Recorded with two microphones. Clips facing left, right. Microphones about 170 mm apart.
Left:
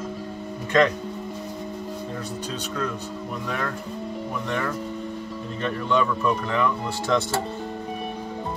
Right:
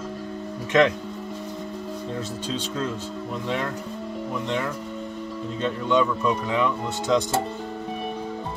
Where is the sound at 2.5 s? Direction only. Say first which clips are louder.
Right 2 dB; 25° right (ahead or behind).